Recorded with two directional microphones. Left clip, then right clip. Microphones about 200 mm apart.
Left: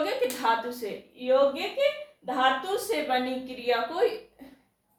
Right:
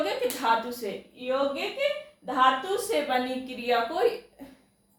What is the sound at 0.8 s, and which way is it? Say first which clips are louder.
Speech: right 1 dB; centre (ahead or behind).